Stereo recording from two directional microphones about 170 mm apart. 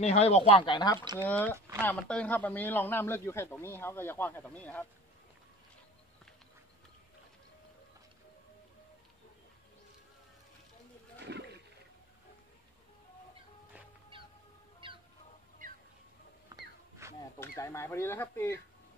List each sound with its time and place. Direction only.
0.0 s speech: 40° left (ahead or behind)
1.2 s a man's voice: 10° left (ahead or behind)
11.3 s roaring cats: 75° right (ahead or behind)
14.8 s a sound: 30° right (ahead or behind)
16.5 s wail: 20° right (ahead or behind)
17.4 s a man's voice: 15° left (ahead or behind)